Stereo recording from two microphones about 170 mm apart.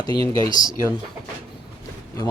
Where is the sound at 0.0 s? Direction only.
25° left (ahead or behind).